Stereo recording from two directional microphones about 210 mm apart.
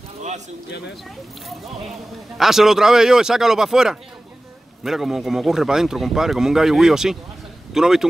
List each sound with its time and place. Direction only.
0.7 s speech: 55° left (ahead or behind)
1.9 s speech: centre (ahead or behind)